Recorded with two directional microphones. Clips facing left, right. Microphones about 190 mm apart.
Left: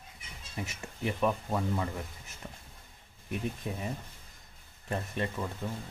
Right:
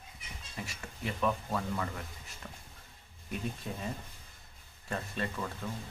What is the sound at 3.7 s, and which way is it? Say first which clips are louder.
Speech: left 3 dB; 15° left (ahead or behind).